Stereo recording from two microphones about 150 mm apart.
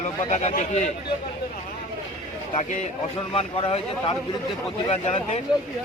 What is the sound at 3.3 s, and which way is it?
A man's voice, 40° left (ahead or behind).